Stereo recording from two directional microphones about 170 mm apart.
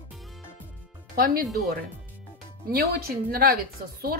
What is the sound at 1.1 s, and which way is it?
A woman's voice, 60° right (ahead or behind).